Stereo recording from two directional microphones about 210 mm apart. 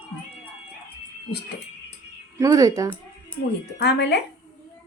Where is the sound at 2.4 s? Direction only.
15° right (ahead or behind).